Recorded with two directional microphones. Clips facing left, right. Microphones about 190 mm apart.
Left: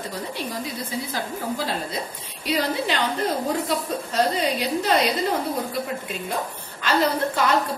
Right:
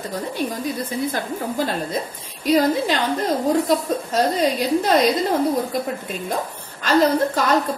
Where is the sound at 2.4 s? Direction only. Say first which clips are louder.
Right 6 dB; 45° right (ahead or behind).